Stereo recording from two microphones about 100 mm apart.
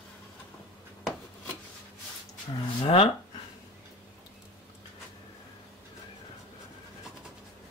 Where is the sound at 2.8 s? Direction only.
70° left (ahead or behind).